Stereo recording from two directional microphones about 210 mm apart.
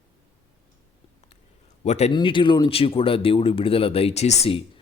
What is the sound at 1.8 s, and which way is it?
A man's voice, 30° left (ahead or behind).